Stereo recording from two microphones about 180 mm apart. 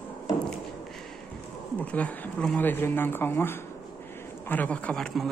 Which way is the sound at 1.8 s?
5° left (ahead or behind).